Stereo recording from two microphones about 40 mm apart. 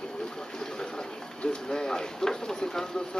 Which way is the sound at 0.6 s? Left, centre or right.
Centre.